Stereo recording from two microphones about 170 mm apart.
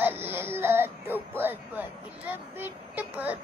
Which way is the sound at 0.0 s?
15° right (ahead or behind).